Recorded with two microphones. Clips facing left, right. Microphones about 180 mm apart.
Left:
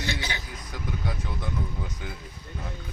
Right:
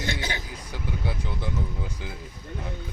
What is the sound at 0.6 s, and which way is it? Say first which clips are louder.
Speech: left 1 dB; 10° right (ahead or behind).